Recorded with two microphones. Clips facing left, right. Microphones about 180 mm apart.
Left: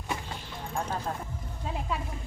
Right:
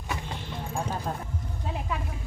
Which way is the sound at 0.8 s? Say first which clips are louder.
Even; 10° right (ahead or behind).